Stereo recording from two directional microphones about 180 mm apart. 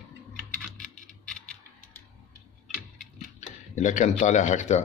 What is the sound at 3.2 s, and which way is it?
Speech, 40° left (ahead or behind).